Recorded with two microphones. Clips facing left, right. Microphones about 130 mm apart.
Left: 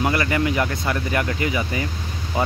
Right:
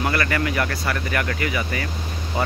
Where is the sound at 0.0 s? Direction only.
20° left (ahead or behind).